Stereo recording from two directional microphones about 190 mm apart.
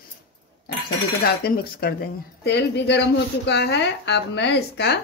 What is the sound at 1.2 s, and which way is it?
Speech, 55° left (ahead or behind).